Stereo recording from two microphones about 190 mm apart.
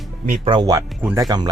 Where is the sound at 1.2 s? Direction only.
20° right (ahead or behind).